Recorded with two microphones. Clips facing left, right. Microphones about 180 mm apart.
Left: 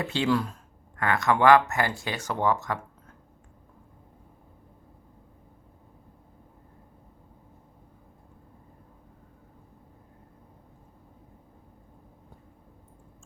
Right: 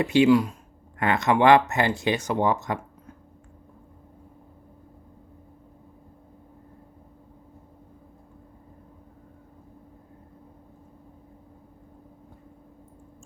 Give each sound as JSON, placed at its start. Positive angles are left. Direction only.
{"t": 0.0, "sound": "speech", "side_deg": -15}